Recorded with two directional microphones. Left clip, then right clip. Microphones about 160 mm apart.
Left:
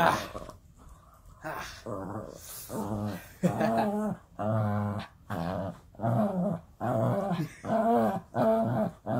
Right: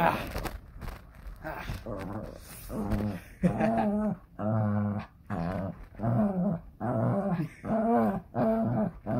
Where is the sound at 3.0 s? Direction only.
10° left (ahead or behind).